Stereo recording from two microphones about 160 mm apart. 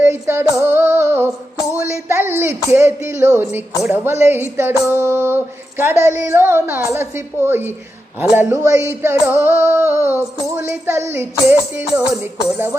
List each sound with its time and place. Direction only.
0.0 s female singing: 15° right (ahead or behind)
2.0 s a woman's voice: 15° right (ahead or behind)